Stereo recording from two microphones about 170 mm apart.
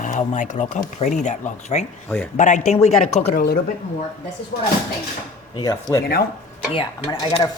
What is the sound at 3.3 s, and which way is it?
Speech, 65° left (ahead or behind).